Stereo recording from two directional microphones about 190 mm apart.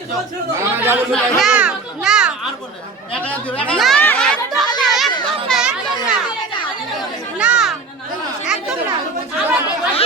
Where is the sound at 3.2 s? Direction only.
5° left (ahead or behind).